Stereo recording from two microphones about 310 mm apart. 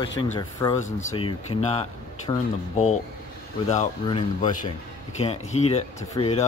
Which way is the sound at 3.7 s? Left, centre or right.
Centre.